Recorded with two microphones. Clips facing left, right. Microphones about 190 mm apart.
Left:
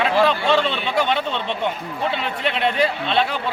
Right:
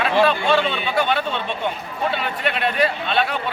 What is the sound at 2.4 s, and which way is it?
Speech, 25° left (ahead or behind).